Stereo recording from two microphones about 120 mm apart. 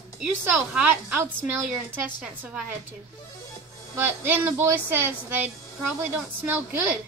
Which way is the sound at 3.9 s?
15° right (ahead or behind).